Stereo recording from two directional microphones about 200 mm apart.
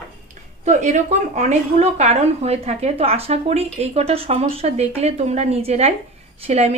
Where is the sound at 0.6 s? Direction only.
35° right (ahead or behind).